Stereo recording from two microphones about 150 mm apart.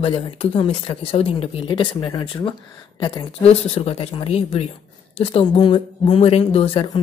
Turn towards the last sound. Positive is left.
turn(degrees=35)  # may be behind; listen again after turning